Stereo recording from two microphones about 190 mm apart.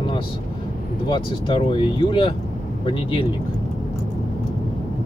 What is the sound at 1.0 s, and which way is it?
Speech, 25° left (ahead or behind).